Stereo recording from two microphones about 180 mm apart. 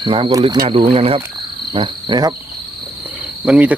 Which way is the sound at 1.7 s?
25° right (ahead or behind).